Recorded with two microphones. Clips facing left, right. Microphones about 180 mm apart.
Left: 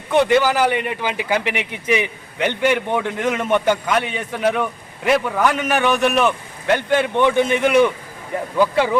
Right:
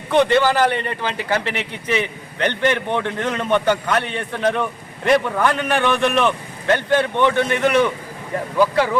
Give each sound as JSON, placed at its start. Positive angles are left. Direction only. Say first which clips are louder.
{"t": 0.1, "sound": "a man's voice", "louder": "even", "side_deg": 10}